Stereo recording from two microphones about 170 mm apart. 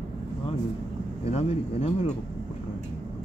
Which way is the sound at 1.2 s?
35° left (ahead or behind).